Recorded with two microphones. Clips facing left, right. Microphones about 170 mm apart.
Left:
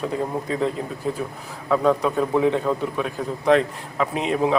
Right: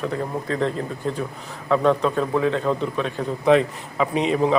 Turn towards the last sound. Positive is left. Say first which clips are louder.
# right 2 dB
turn(degrees=0)  # may be behind; listen again after turning